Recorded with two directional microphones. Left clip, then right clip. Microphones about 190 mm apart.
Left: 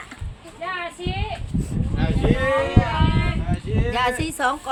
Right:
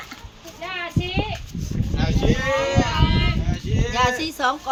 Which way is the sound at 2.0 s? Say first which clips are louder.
Left 1 dB; 55° right (ahead or behind).